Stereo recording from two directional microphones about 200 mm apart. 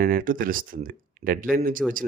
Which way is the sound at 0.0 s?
45° right (ahead or behind).